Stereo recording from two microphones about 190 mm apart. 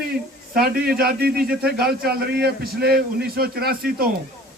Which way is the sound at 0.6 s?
55° right (ahead or behind).